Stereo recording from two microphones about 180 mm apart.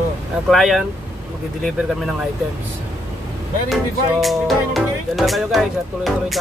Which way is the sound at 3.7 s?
Centre (ahead or behind).